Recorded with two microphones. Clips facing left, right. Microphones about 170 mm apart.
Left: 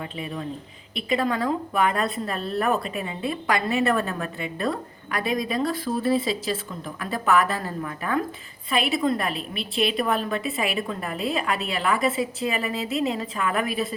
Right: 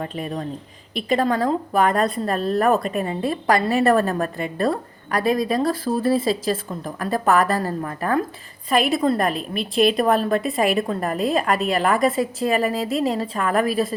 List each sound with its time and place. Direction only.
0.0 s a woman's voice: 45° right (ahead or behind)